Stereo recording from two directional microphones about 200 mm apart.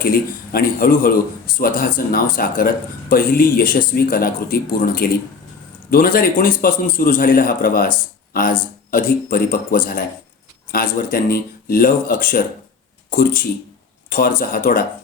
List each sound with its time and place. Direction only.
0.0 s speech: 45° left (ahead or behind)